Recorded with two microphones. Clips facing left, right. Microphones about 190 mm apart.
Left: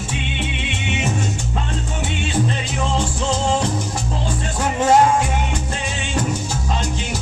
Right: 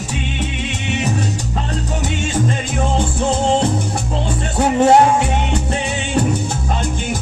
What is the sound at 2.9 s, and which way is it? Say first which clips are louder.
Music: right 3 dB; 55° right (ahead or behind).